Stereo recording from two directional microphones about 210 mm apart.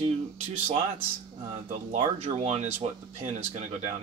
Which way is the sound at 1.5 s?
35° right (ahead or behind).